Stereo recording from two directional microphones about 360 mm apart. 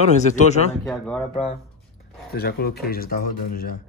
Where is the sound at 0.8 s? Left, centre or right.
Centre.